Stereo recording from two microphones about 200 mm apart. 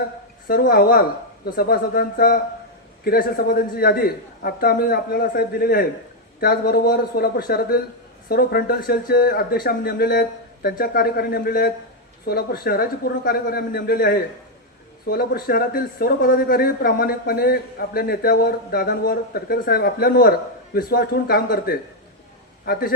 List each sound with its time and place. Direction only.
0.4 s a man's voice: 45° left (ahead or behind)